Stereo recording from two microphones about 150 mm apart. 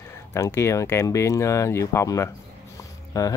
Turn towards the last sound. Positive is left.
turn(degrees=20)  # may be behind; listen again after turning